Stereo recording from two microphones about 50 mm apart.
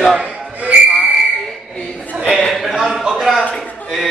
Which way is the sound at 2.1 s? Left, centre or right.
Right.